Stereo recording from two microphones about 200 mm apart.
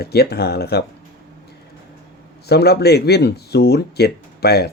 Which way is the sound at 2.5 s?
55° left (ahead or behind).